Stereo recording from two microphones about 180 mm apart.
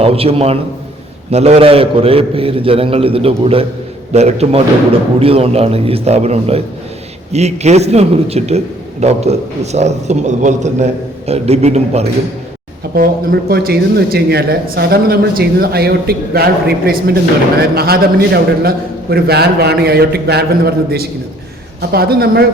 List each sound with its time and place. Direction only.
0.0 s a man's voice: 35° right (ahead or behind)
13.0 s speech: 55° right (ahead or behind)